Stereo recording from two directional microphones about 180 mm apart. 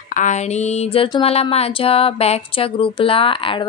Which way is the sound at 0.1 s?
40° left (ahead or behind).